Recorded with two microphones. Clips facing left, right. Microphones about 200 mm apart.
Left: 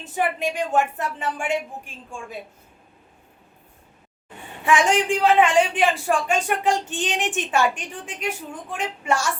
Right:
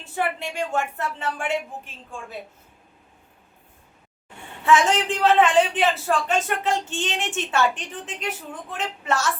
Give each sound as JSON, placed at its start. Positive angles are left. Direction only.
{"t": 0.0, "sound": "a man's voice", "side_deg": 15}
{"t": 4.6, "sound": "a man's voice", "side_deg": 15}